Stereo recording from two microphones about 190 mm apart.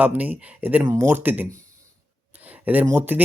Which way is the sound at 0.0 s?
10° right (ahead or behind).